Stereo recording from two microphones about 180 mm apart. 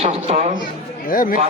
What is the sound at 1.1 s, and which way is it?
Speech, 50° left (ahead or behind).